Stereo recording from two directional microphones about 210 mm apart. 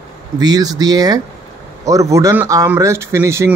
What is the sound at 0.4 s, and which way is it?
Speech, 20° right (ahead or behind).